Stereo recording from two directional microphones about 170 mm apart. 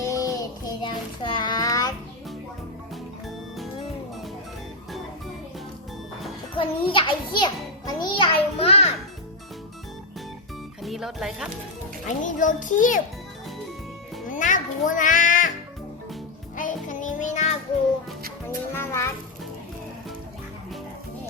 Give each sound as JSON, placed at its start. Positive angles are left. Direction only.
{"t": 0.0, "sound": "child singing", "side_deg": 20}
{"t": 6.6, "sound": "music", "side_deg": 30}
{"t": 10.8, "sound": "speech", "side_deg": 0}
{"t": 12.0, "sound": "a child's voice", "side_deg": 50}
{"t": 14.3, "sound": "music", "side_deg": 50}
{"t": 16.6, "sound": "child singing", "side_deg": 50}
{"t": 18.7, "sound": "music", "side_deg": 15}